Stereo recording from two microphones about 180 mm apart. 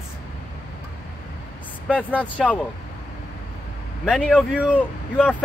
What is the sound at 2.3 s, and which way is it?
Speech, 5° left (ahead or behind).